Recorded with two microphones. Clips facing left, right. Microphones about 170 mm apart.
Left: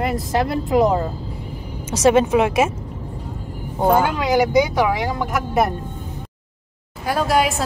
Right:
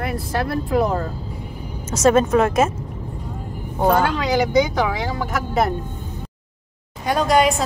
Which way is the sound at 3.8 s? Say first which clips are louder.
Left 1 dB; 10° left (ahead or behind).